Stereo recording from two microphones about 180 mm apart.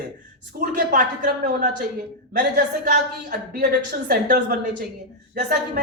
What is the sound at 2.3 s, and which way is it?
Speech, 50° right (ahead or behind).